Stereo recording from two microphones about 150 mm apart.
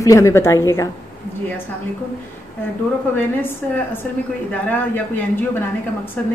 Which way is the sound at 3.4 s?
15° left (ahead or behind).